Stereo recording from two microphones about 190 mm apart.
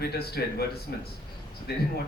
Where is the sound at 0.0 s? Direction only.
55° left (ahead or behind).